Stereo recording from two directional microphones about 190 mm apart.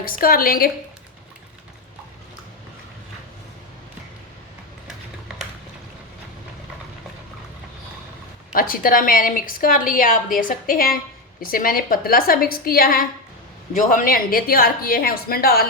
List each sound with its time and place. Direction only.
0.0 s a woman's voice: 50° left (ahead or behind)
8.5 s a woman's voice: 50° left (ahead or behind)